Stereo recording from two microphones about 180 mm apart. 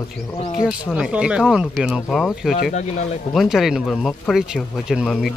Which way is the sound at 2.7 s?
40° left (ahead or behind).